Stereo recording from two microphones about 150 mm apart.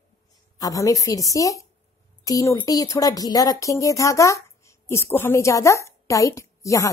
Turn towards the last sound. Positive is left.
turn(degrees=20)  # may be behind; listen again after turning